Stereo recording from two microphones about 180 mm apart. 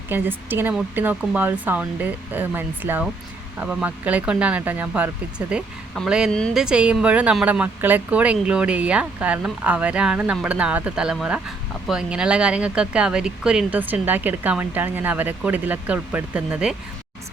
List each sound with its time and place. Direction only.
0.1 s speech: 10° right (ahead or behind)